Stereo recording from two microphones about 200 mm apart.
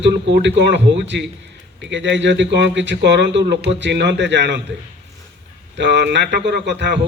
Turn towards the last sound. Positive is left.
turn(degrees=-60)  # may be behind; listen again after turning